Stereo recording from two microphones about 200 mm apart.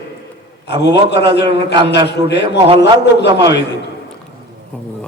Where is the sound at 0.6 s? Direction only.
55° left (ahead or behind).